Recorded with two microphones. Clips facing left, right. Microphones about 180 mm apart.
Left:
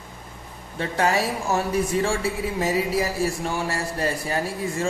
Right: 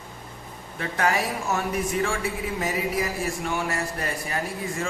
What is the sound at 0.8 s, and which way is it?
Speech, 30° left (ahead or behind).